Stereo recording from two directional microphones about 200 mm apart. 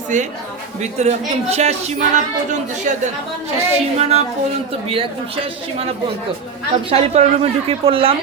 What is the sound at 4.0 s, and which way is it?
A woman's voice, 30° right (ahead or behind).